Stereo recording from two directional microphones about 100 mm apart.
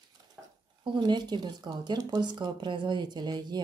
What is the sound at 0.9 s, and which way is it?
A woman's voice, 45° right (ahead or behind).